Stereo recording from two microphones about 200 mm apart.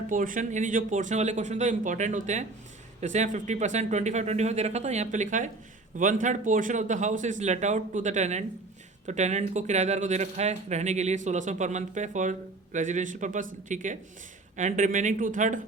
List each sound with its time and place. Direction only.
0.1 s speech: 40° right (ahead or behind)